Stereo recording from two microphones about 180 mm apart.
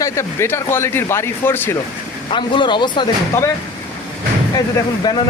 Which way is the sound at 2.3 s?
25° left (ahead or behind).